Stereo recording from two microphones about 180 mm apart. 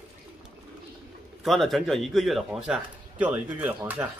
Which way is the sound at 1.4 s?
Centre (ahead or behind).